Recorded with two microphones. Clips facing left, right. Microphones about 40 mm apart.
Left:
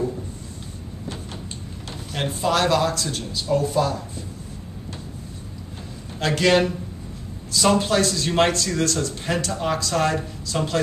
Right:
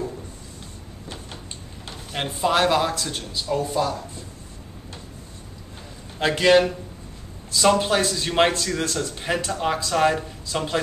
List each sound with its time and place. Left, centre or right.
1.9 s speech: centre
6.1 s speech: centre
7.8 s speech: centre